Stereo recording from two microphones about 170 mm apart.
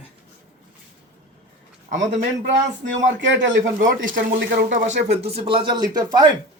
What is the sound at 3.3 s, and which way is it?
Speech, 90° right.